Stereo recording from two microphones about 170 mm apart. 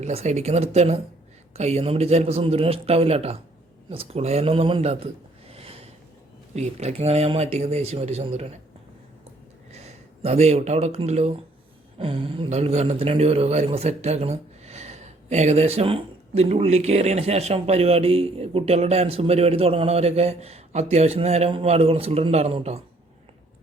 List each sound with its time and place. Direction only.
0.0 s a man's voice: 40° right (ahead or behind)
5.5 s a sound: 35° right (ahead or behind)
6.5 s a man's voice: 40° right (ahead or behind)
9.7 s a man's voice: 40° right (ahead or behind)